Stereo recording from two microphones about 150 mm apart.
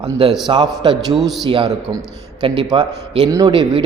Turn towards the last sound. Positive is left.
turn(degrees=-30)  # may be behind; listen again after turning